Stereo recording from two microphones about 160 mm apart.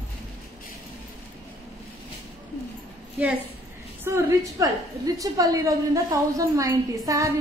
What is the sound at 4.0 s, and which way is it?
A woman's voice, 20° right (ahead or behind).